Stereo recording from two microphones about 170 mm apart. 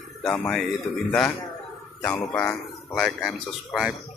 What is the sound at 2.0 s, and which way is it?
Speech, 15° left (ahead or behind).